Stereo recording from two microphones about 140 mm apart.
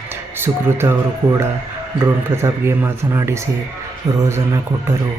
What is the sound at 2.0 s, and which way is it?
A man's voice, 15° right (ahead or behind).